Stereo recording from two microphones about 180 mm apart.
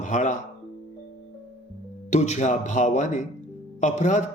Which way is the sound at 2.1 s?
40° left (ahead or behind).